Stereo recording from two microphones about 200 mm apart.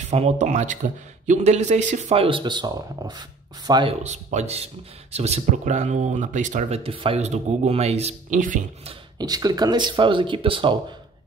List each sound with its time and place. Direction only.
0.0 s speech: 35° right (ahead or behind)
4.0 s speech: 35° right (ahead or behind)
9.2 s speech: 20° right (ahead or behind)